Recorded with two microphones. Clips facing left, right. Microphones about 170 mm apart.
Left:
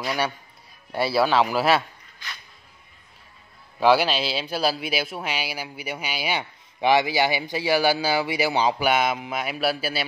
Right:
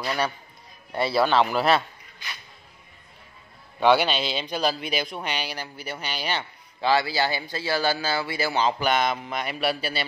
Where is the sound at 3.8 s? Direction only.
Centre (ahead or behind).